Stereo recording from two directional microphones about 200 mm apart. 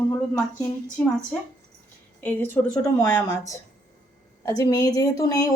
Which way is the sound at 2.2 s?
10° left (ahead or behind).